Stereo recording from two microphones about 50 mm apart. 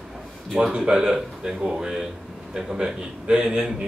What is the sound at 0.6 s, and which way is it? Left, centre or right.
Speech, centre.